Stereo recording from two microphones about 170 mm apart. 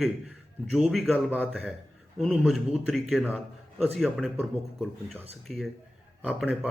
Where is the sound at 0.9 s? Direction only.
Centre (ahead or behind).